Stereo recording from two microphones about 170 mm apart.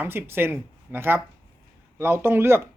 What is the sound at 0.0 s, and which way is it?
Speech, 15° right (ahead or behind).